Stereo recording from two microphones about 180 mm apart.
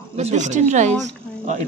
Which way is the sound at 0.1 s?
40° right (ahead or behind).